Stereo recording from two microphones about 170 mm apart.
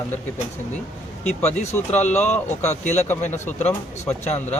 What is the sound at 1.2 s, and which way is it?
Speech, 40° left (ahead or behind).